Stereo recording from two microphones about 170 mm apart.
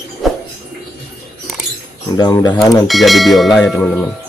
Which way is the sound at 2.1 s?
20° left (ahead or behind).